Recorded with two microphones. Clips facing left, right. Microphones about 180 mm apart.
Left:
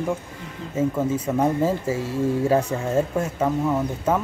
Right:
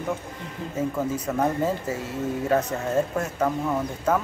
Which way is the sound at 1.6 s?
30° left (ahead or behind).